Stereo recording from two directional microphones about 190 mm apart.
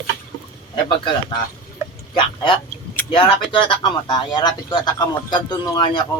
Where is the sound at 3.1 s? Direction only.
25° left (ahead or behind).